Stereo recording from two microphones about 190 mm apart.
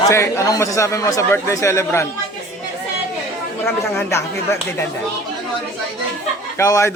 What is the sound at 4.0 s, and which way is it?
Speech, 15° left (ahead or behind).